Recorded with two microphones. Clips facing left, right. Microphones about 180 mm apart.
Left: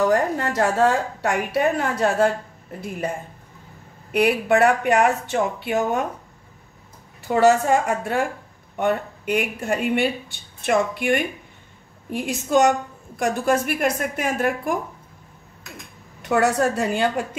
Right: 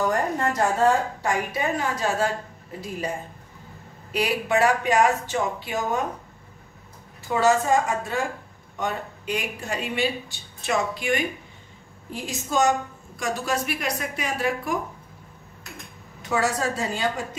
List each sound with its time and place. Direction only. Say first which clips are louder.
0.1 s speech: left 4 dB; 75° left (ahead or behind)
4.1 s speech: left 5 dB; 55° left (ahead or behind)
7.3 s a woman's voice: left 3 dB; 60° left (ahead or behind)
16.3 s speech: left 5 dB; 60° left (ahead or behind)